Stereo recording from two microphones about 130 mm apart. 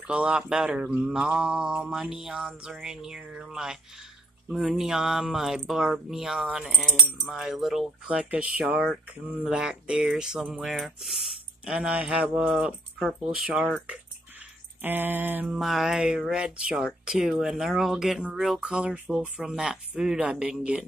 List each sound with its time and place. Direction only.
0.1 s speech: 10° right (ahead or behind)
14.8 s speech: 15° right (ahead or behind)
15.5 s speech: centre (ahead or behind)